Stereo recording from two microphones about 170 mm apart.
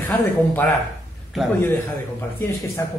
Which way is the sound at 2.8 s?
15° left (ahead or behind).